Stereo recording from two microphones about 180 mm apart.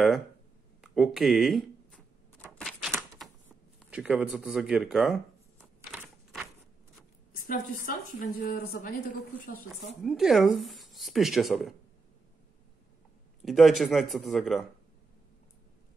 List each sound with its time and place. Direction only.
0.7 s a sound: centre (ahead or behind)
3.9 s speech: 5° right (ahead or behind)
5.6 s a sound: 5° right (ahead or behind)
7.3 s a woman's voice: 50° left (ahead or behind)
10.0 s speech: centre (ahead or behind)
13.4 s speech: centre (ahead or behind)